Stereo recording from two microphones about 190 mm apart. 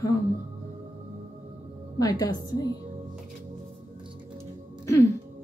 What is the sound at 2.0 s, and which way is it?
Speech, 20° left (ahead or behind).